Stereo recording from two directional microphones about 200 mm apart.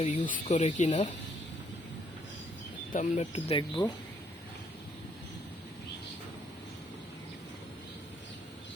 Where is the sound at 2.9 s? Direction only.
35° left (ahead or behind).